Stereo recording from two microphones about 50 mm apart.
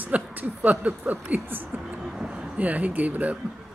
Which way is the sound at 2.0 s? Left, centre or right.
Centre.